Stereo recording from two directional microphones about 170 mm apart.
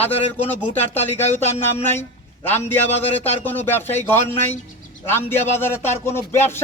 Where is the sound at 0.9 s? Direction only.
40° left (ahead or behind).